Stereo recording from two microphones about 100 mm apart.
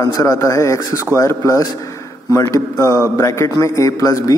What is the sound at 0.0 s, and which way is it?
A man's voice, 35° left (ahead or behind).